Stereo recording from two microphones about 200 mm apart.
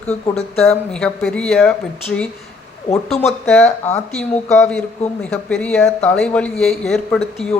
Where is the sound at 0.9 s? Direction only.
5° left (ahead or behind).